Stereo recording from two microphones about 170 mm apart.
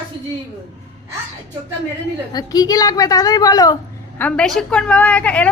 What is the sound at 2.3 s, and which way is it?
A woman's voice, 20° left (ahead or behind).